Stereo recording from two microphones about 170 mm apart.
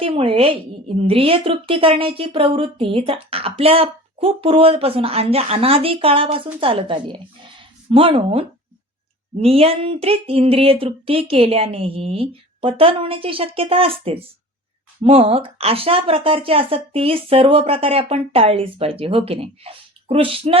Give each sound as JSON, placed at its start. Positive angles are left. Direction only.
{"t": 0.0, "sound": "a woman's voice", "side_deg": -35}